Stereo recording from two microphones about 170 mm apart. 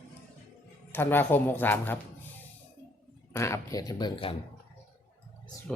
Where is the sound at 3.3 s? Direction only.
15° left (ahead or behind).